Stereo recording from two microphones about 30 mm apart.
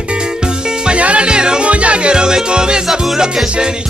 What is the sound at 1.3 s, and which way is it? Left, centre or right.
Music, right.